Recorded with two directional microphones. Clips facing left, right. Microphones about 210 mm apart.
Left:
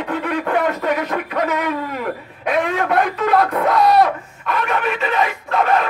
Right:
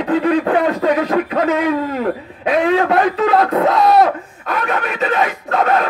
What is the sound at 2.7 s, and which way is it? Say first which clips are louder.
A man's voice: right 4 dB; 30° right (ahead or behind).